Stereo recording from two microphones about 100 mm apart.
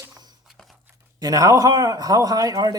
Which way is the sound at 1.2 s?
40° right (ahead or behind).